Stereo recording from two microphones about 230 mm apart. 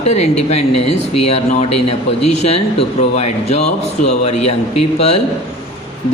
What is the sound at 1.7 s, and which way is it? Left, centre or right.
Speech, left.